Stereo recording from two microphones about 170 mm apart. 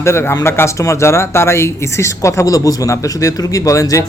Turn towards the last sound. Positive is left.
turn(degrees=20)  # may be behind; listen again after turning